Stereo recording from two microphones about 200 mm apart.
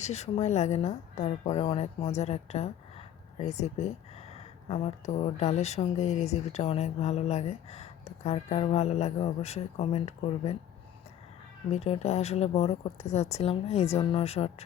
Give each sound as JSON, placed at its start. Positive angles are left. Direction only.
{"t": 0.0, "sound": "speech", "side_deg": 35}
{"t": 11.7, "sound": "speech", "side_deg": 30}